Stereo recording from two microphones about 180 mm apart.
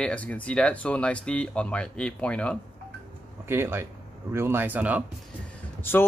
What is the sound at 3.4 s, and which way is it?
A man's voice, 10° right (ahead or behind).